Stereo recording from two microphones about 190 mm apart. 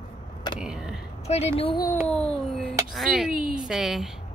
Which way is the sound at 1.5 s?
30° left (ahead or behind).